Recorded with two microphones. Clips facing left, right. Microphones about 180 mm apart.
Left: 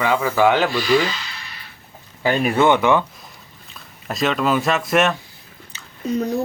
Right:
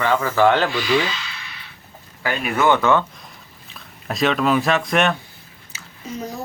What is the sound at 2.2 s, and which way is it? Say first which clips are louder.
Speech: left 4 dB; 30° left (ahead or behind).